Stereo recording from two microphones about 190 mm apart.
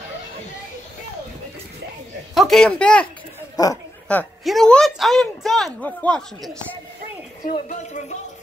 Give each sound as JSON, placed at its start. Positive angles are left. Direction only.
{"t": 2.3, "sound": "speech", "side_deg": 0}
{"t": 3.6, "sound": "speech", "side_deg": 20}
{"t": 4.1, "sound": "a woman's voice", "side_deg": 5}
{"t": 7.5, "sound": "a woman's voice", "side_deg": 40}